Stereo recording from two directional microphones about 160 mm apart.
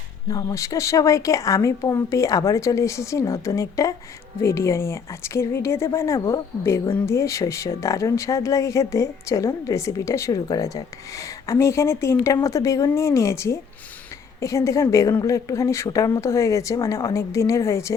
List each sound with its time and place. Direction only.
0.3 s speech: 20° left (ahead or behind)